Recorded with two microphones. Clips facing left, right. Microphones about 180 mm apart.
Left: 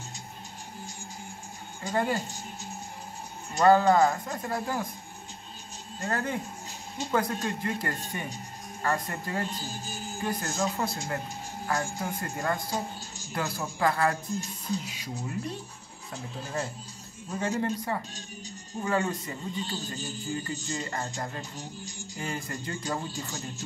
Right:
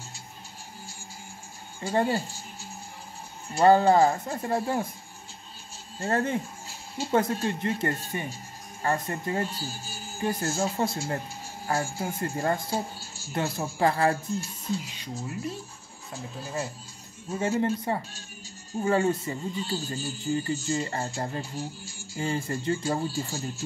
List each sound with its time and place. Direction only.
1.8 s speech: 30° right (ahead or behind)
3.5 s speech: 30° right (ahead or behind)
5.9 s speech: 30° right (ahead or behind)
9.5 s speech: 5° right (ahead or behind)
10.2 s speech: 35° right (ahead or behind)
15.1 s speech: 5° right (ahead or behind)
17.4 s speech: 25° right (ahead or behind)